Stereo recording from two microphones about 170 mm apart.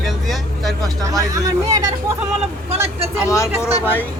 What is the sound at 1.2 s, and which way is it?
Speech, 20° right (ahead or behind).